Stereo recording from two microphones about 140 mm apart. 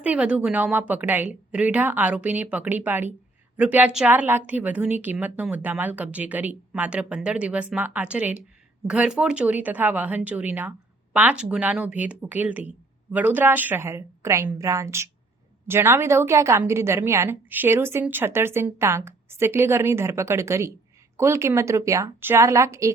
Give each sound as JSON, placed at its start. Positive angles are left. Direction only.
{"t": 0.0, "sound": "a woman's voice", "side_deg": -10}